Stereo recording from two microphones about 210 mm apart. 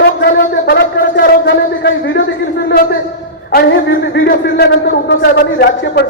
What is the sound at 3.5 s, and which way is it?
A woman's voice, 45° left (ahead or behind).